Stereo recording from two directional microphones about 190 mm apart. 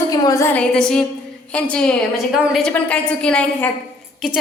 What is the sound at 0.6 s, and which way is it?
A woman's voice, 5° left (ahead or behind).